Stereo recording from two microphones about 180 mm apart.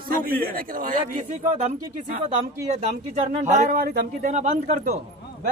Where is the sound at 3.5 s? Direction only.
45° right (ahead or behind).